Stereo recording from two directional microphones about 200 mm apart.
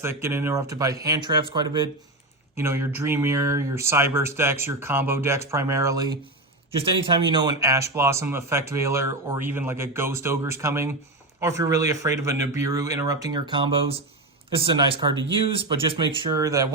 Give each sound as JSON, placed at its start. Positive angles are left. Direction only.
{"t": 0.0, "sound": "speech", "side_deg": -10}
{"t": 2.6, "sound": "speech", "side_deg": -10}